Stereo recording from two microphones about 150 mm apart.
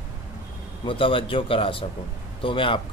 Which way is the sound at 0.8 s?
35° left (ahead or behind).